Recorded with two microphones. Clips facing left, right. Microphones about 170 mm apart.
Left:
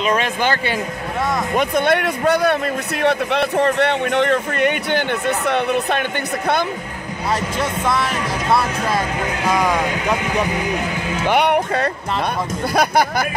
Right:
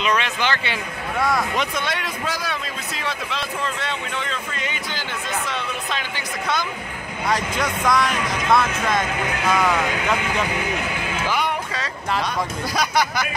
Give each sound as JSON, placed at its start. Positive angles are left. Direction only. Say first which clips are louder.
{"t": 0.0, "sound": "a man's voice", "louder": "left 4 dB", "side_deg": 45}
{"t": 7.5, "sound": "speech", "louder": "left 1 dB", "side_deg": 25}
{"t": 9.5, "sound": "speech", "louder": "left 2 dB", "side_deg": 10}
{"t": 11.2, "sound": "music", "louder": "left 10 dB", "side_deg": 65}
{"t": 12.7, "sound": "speech", "louder": "left 5 dB", "side_deg": 55}